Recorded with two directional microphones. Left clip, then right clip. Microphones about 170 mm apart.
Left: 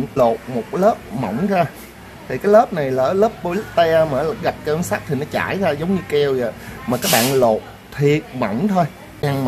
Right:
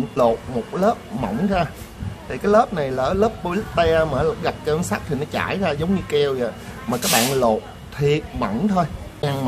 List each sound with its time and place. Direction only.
0.2 s speech: 25° left (ahead or behind)